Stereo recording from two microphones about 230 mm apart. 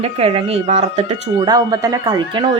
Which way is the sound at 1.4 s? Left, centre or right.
Centre.